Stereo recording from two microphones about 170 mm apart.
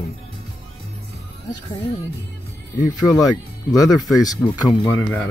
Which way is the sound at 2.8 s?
25° left (ahead or behind).